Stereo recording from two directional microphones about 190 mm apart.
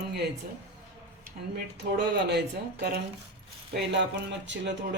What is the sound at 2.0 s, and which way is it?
Speech, 60° right (ahead or behind).